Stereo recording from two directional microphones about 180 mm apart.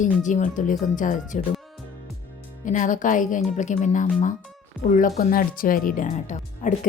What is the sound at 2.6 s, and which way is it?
Speech, 45° left (ahead or behind).